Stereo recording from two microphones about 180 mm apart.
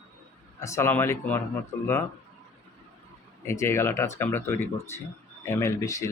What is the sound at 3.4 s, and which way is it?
Speech, 15° left (ahead or behind).